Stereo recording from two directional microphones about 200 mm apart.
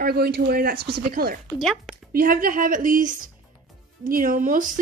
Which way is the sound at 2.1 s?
45° right (ahead or behind).